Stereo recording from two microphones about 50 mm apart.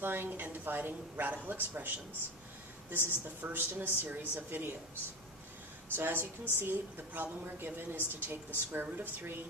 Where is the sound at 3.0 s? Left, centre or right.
Right.